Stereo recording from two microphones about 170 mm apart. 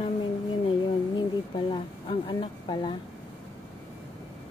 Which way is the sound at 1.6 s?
30° left (ahead or behind).